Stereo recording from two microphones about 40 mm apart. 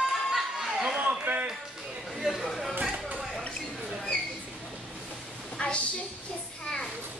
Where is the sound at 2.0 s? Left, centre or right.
Centre.